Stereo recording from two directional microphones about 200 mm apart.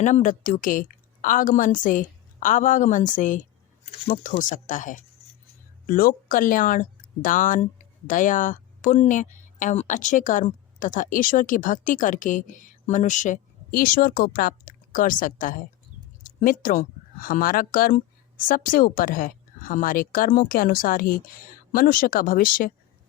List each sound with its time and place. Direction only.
0.0 s speech: 40° left (ahead or behind)